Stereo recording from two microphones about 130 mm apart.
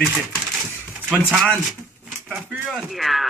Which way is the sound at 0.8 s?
10° right (ahead or behind).